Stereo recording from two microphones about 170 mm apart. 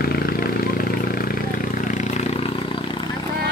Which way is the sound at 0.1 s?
65° left (ahead or behind).